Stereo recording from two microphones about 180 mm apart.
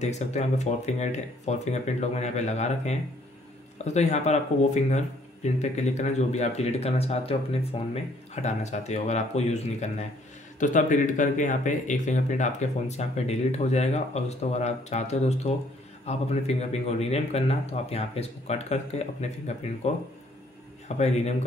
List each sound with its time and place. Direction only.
0.0 s speech: 40° left (ahead or behind)
21.0 s speech: 40° left (ahead or behind)